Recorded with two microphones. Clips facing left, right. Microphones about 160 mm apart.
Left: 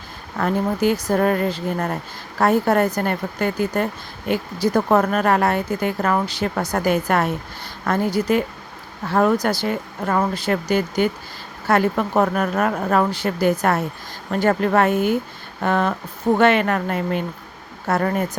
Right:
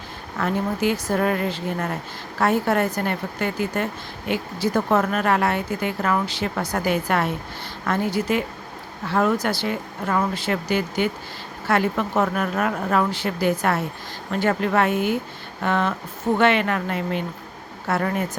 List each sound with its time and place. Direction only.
0.3 s speech: 40° left (ahead or behind)